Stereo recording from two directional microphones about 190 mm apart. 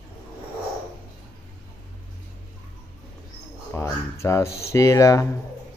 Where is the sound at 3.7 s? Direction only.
15° left (ahead or behind).